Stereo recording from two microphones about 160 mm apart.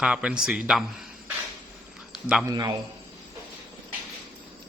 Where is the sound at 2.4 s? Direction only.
20° right (ahead or behind).